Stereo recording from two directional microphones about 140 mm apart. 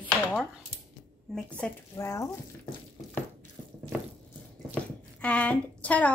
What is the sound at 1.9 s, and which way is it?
Speech, 20° left (ahead or behind).